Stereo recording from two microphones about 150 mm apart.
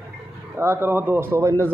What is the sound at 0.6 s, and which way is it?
Speech, 15° right (ahead or behind).